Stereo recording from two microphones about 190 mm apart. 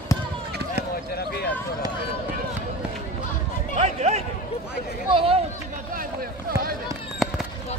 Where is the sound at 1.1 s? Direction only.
60° left (ahead or behind).